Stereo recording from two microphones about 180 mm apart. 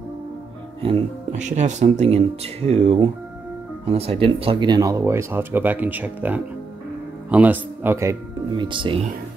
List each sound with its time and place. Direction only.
0.8 s speech: 40° right (ahead or behind); by 8.2 s 15° right (ahead or behind)
8.5 s speech: 25° right (ahead or behind)